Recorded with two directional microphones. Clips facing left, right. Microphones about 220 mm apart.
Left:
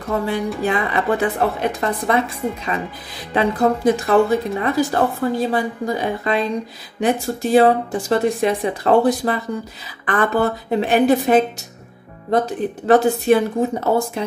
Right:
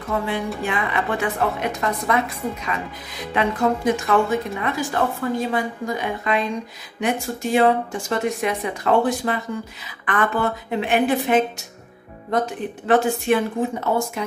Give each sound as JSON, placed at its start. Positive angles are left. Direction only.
{"t": 0.1, "sound": "a woman's voice", "side_deg": 40}